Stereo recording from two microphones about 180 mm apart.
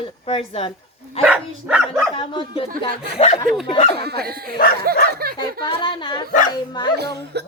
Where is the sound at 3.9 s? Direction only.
65° right (ahead or behind).